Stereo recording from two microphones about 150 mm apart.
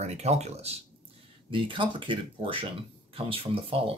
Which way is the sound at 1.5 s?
35° right (ahead or behind).